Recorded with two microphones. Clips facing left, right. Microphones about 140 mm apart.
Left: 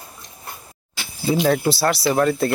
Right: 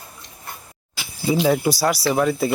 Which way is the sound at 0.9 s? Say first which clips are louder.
Even; 5° right (ahead or behind).